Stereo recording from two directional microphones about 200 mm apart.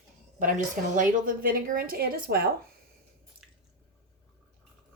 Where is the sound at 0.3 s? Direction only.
40° right (ahead or behind).